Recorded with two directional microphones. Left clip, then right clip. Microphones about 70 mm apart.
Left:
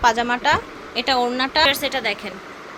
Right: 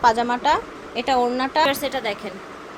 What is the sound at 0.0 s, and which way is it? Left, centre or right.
Speech, centre.